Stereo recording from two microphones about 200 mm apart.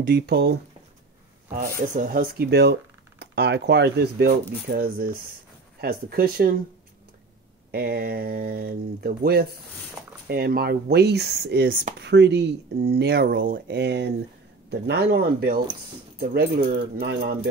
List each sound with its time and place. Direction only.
0.1 s speech: 55° right (ahead or behind)
1.5 s speech: 40° right (ahead or behind)
7.7 s speech: 50° right (ahead or behind)